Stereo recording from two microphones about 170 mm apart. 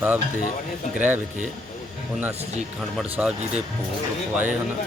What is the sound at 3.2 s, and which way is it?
Speech, centre (ahead or behind).